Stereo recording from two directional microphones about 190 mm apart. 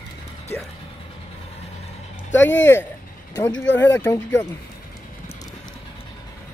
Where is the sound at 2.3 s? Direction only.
75° left (ahead or behind).